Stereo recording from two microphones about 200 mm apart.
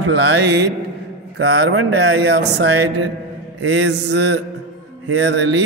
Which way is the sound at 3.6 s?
65° right (ahead or behind).